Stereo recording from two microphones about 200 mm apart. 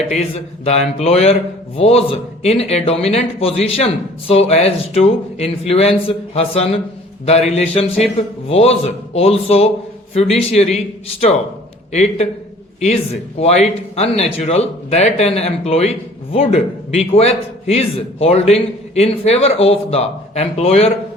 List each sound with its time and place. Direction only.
0.6 s speech: 30° left (ahead or behind)
13.4 s speech: 30° left (ahead or behind)